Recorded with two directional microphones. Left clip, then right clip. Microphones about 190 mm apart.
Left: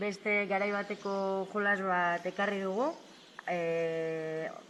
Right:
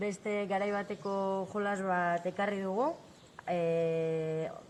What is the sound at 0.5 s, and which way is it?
Speech, 15° right (ahead or behind).